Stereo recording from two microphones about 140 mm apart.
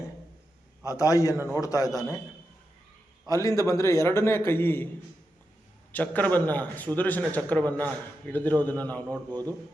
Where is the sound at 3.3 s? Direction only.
25° left (ahead or behind).